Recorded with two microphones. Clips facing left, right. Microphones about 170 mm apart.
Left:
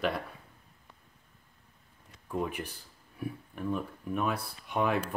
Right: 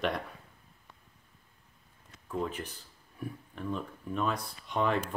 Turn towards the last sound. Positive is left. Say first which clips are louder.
# even
turn(degrees=10)  # may be behind; listen again after turning